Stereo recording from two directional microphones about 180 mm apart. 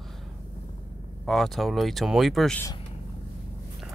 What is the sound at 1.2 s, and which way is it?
Speech, centre (ahead or behind).